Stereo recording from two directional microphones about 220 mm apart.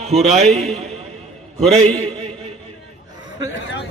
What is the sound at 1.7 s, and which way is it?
Speech, 30° right (ahead or behind).